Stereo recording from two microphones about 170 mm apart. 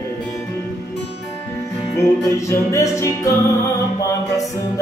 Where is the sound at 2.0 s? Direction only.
20° left (ahead or behind).